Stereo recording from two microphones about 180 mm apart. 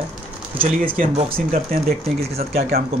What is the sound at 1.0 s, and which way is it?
Speech, 40° right (ahead or behind).